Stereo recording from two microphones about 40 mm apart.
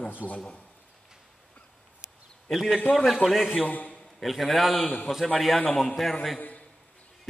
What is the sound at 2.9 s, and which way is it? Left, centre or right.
Speech, centre.